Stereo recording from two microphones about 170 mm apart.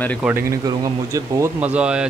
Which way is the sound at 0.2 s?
15° right (ahead or behind).